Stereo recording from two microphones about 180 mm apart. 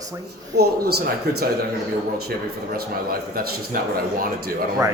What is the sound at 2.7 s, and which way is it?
A man's voice, 55° right (ahead or behind).